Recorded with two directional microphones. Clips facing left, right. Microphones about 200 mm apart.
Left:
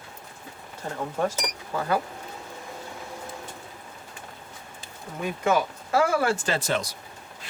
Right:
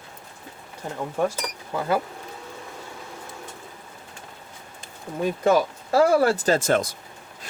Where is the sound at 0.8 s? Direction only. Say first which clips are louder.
Right 1 dB; 15° right (ahead or behind).